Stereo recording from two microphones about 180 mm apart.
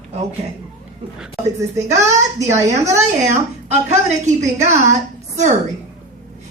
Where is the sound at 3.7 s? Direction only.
40° right (ahead or behind).